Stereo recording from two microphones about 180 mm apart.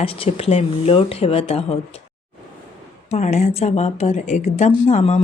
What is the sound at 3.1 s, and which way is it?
Speech, 35° left (ahead or behind).